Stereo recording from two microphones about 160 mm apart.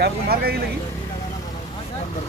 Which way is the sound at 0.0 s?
75° right (ahead or behind).